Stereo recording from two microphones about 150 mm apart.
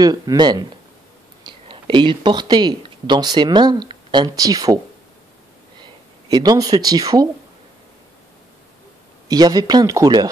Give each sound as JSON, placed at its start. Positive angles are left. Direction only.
{"t": 0.0, "sound": "speech", "side_deg": -25}
{"t": 5.8, "sound": "speech", "side_deg": -25}
{"t": 9.3, "sound": "speech", "side_deg": -25}